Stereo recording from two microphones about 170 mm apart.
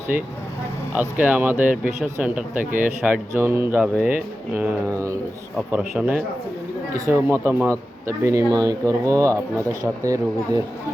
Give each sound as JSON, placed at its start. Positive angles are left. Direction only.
{"t": 0.9, "sound": "speech", "side_deg": -10}